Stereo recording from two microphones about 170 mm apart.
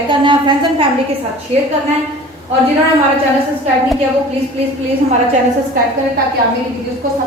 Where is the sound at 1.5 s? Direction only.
40° right (ahead or behind).